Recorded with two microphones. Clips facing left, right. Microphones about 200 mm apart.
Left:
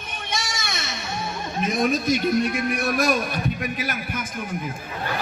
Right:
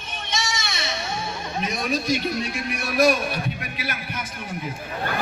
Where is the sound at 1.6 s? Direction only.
50° left (ahead or behind).